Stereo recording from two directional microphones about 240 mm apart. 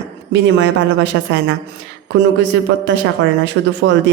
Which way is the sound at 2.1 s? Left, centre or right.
Right.